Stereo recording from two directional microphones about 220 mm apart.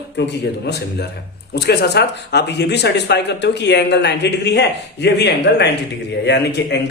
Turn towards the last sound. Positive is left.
turn(degrees=50)  # may be behind; listen again after turning